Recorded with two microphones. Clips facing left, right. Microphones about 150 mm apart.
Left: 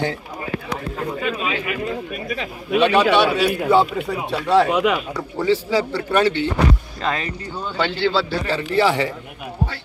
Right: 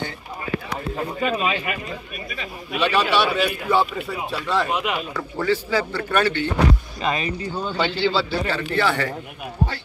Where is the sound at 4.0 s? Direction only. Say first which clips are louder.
Left 4 dB; 65° left (ahead or behind).